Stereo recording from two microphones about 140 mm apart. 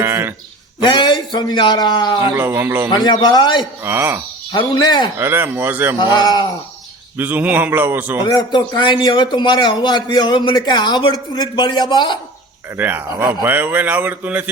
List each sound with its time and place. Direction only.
0.0 s a sound: 15° right (ahead or behind)
0.8 s a man's voice: 35° left (ahead or behind)
2.3 s speech: 15° right (ahead or behind)
2.9 s a man's voice: 30° left (ahead or behind)
3.8 s speech: 15° right (ahead or behind)
4.5 s a man's voice: 30° left (ahead or behind)
5.1 s speech: 15° right (ahead or behind)
6.0 s a man's voice: 30° left (ahead or behind)
7.2 s speech: 15° right (ahead or behind)
8.2 s a man's voice: 30° left (ahead or behind)
12.7 s speech: 15° right (ahead or behind)